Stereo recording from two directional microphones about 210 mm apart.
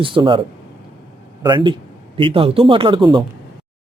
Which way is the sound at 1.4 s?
20° right (ahead or behind).